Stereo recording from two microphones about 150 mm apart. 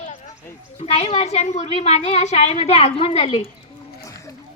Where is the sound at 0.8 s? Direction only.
45° left (ahead or behind).